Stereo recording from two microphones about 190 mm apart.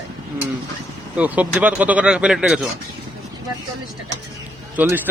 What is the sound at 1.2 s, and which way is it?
Speech, 10° right (ahead or behind).